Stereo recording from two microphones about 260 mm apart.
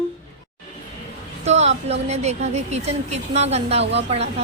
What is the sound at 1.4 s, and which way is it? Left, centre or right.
A woman's voice, right.